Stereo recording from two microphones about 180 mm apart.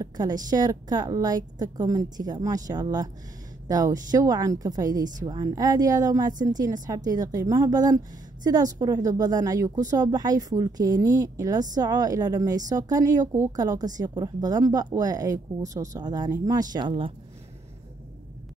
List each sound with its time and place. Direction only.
0.0 s a woman's voice: 20° right (ahead or behind)